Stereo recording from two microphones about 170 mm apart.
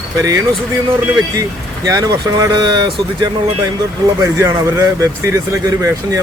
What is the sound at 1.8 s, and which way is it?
Speech, 20° right (ahead or behind).